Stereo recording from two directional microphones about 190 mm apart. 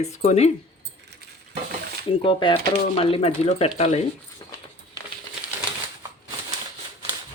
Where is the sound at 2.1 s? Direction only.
25° left (ahead or behind).